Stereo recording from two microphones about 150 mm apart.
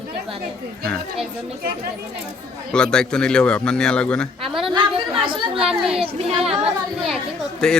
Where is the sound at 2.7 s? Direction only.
5° left (ahead or behind).